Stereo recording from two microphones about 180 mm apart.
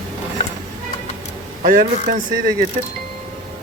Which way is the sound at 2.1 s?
60° right (ahead or behind).